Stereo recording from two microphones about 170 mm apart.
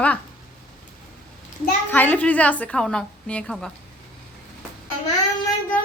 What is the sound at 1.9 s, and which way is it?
A woman's voice, 10° left (ahead or behind).